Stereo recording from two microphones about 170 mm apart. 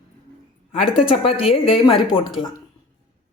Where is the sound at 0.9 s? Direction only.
30° left (ahead or behind).